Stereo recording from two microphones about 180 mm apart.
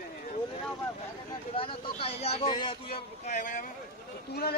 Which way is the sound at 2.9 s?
40° left (ahead or behind).